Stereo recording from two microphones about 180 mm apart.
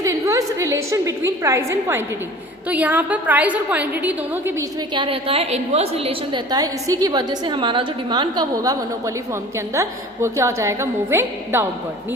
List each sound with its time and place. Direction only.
0.0 s a woman's voice: 20° right (ahead or behind)
4.9 s a woman's voice: 30° right (ahead or behind); by 11.6 s 15° right (ahead or behind)